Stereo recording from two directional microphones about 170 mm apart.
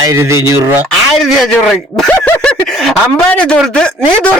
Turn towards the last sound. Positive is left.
turn(degrees=5)  # may be behind; listen again after turning